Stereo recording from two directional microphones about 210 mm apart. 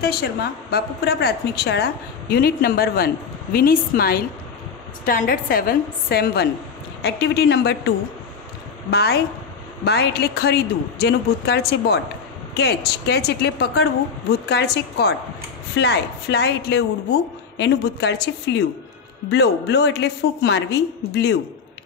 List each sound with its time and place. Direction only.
0.0 s a woman's voice: 50° left (ahead or behind)
8.9 s a woman's voice: 50° left (ahead or behind)